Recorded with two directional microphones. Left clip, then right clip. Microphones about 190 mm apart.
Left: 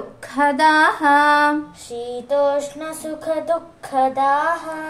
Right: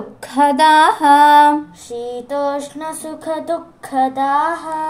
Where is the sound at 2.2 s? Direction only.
10° right (ahead or behind).